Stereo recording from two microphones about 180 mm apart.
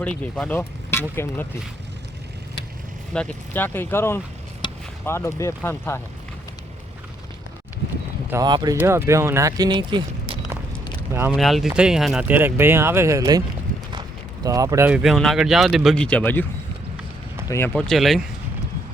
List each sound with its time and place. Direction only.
0.0 s speech: 5° left (ahead or behind)
3.1 s speech: 5° left (ahead or behind)
4.6 s basketball bounce: 25° left (ahead or behind)
5.0 s speech: 15° left (ahead or behind)
8.3 s speech: 20° right (ahead or behind)
11.1 s speech: 15° right (ahead or behind)
11.3 s speech: centre (ahead or behind); by 13.4 s 20° right (ahead or behind)
14.4 s speech: 20° right (ahead or behind)
14.8 s speech: 5° right (ahead or behind)
17.7 s speech: centre (ahead or behind)